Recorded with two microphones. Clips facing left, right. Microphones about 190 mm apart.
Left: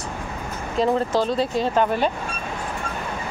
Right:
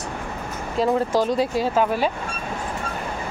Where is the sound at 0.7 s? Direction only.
10° right (ahead or behind).